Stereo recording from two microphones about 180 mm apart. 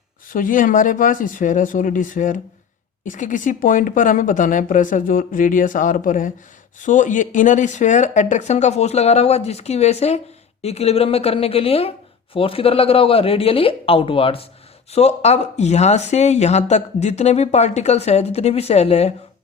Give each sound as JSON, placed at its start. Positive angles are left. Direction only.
{"t": 0.3, "sound": "speech", "side_deg": 50}